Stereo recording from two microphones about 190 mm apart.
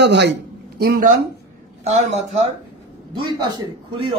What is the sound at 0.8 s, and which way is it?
Speech, 55° right (ahead or behind).